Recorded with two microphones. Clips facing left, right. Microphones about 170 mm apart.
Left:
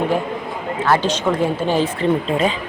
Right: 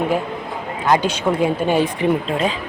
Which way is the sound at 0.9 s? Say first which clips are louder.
Right 1 dB; 15° right (ahead or behind).